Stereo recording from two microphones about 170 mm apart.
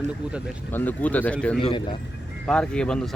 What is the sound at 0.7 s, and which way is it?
Speech, 10° left (ahead or behind).